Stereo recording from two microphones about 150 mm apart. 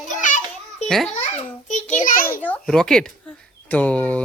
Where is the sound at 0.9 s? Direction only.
5° left (ahead or behind).